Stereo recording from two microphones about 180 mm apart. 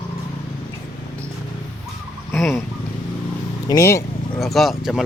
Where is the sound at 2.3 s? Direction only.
15° left (ahead or behind).